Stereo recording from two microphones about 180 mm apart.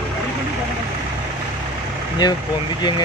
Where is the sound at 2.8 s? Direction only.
25° left (ahead or behind).